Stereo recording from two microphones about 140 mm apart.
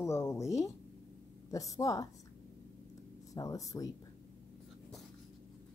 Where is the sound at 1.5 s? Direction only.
25° left (ahead or behind).